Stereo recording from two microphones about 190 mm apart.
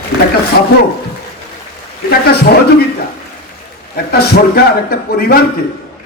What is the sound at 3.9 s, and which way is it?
A man's voice, 55° left (ahead or behind).